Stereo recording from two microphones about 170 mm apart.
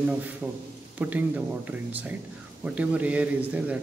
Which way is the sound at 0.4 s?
10° right (ahead or behind).